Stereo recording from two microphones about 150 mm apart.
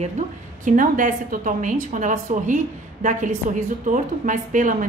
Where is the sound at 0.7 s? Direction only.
60° right (ahead or behind).